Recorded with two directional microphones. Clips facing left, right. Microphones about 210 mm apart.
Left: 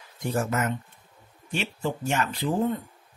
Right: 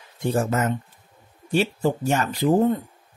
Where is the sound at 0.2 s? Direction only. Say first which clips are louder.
Right 4 dB; 30° right (ahead or behind).